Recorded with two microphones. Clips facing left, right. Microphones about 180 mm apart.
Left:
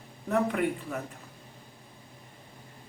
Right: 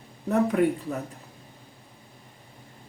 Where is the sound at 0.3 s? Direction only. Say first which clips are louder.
Right 5 dB; 35° right (ahead or behind).